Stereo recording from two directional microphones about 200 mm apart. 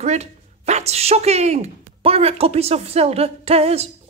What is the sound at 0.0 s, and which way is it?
Speech, 35° right (ahead or behind).